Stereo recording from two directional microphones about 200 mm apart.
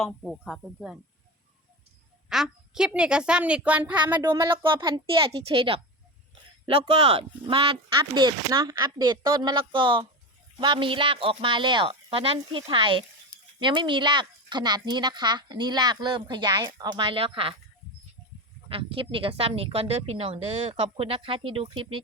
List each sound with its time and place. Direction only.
0.0 s a woman's voice: centre (ahead or behind)
2.3 s a woman's voice: 5° right (ahead or behind); by 5.8 s 30° right (ahead or behind)
6.9 s speech: 30° right (ahead or behind)
18.7 s speech: 25° right (ahead or behind)